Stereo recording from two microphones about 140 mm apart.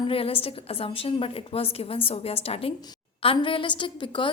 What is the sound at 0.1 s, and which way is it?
A woman's voice, 40° left (ahead or behind).